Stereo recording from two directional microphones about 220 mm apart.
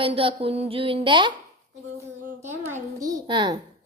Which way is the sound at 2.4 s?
15° right (ahead or behind).